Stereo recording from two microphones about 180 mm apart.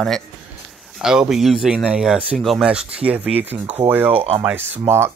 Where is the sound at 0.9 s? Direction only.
5° right (ahead or behind).